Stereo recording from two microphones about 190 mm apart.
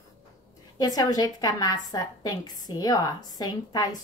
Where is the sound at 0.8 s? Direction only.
20° left (ahead or behind).